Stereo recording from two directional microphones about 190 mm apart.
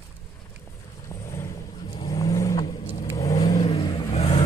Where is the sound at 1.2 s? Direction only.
15° left (ahead or behind).